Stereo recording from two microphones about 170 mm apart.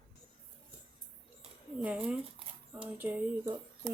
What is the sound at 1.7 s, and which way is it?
Speech, 5° right (ahead or behind).